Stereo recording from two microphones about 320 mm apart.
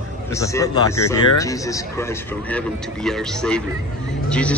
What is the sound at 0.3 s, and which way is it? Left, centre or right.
A man's voice, centre.